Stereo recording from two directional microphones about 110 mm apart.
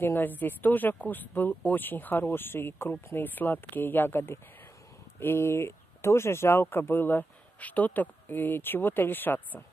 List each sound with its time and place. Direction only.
0.0 s speech: 20° left (ahead or behind)